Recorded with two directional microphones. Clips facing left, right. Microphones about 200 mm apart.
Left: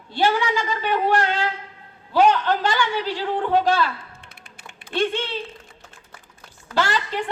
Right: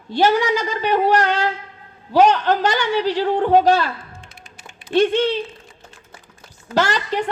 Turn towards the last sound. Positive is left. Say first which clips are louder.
# right 4 dB
turn(degrees=-40)  # may be behind; listen again after turning